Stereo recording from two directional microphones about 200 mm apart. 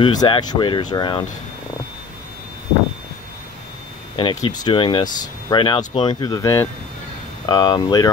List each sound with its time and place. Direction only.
0.0 s speech: 20° left (ahead or behind)
4.2 s speech: 20° left (ahead or behind)